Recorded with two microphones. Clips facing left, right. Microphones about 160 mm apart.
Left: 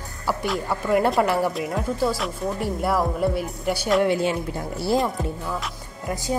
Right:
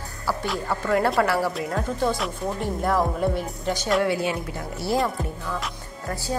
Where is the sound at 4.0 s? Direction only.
25° left (ahead or behind).